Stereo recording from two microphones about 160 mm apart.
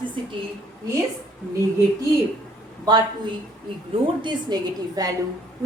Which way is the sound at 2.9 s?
25° right (ahead or behind).